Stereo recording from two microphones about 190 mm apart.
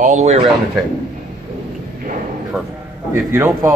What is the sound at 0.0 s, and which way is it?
Speech, 40° right (ahead or behind).